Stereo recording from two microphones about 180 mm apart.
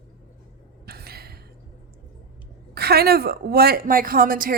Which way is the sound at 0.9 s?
60° right (ahead or behind).